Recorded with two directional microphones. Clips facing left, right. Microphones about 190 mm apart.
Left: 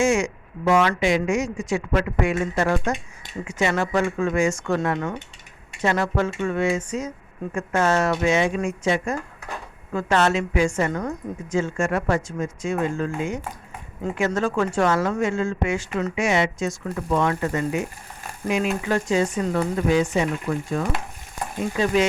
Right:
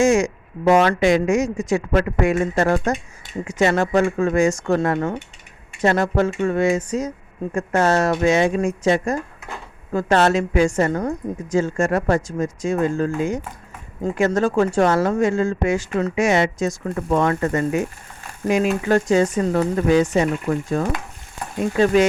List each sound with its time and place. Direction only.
0.0 s speech: 40° right (ahead or behind)